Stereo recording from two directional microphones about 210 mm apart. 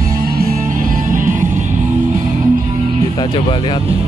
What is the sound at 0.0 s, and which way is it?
Music, 45° right (ahead or behind).